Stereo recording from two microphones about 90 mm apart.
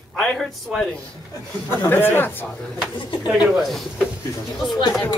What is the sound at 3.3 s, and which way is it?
Speech, centre (ahead or behind).